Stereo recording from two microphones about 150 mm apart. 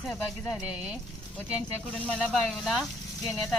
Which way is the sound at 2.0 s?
5° left (ahead or behind).